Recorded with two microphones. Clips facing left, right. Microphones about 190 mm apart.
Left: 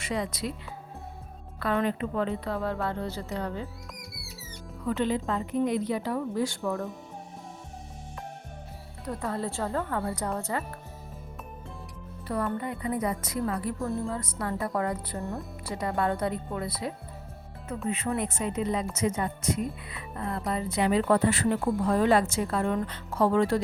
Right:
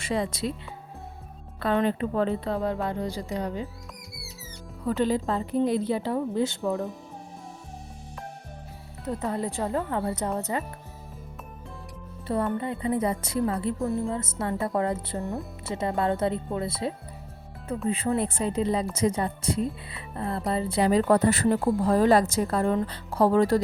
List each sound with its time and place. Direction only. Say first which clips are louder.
0.0 s speech: right 3 dB; 30° right (ahead or behind)
1.5 s speech: right 3 dB; 25° right (ahead or behind)
4.9 s a woman's voice: right 3 dB; 35° right (ahead or behind); by 6.8 s 20° right (ahead or behind)
9.0 s speech: right 3 dB; 20° right (ahead or behind)
12.5 s a woman's voice: right 4 dB; 25° right (ahead or behind)